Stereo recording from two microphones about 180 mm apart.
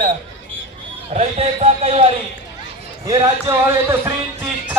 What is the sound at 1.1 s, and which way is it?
A man's voice, 40° right (ahead or behind).